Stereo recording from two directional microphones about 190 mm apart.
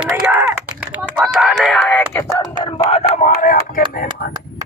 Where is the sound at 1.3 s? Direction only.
Centre (ahead or behind).